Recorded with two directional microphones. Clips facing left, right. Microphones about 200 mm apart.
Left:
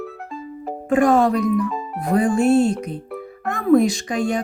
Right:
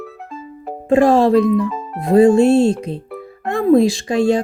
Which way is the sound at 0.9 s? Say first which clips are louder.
Right 4 dB; 25° right (ahead or behind).